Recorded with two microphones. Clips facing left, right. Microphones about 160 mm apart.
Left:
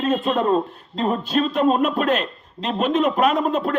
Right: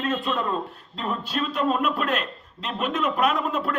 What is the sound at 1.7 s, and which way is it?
A man's voice, 45° left (ahead or behind).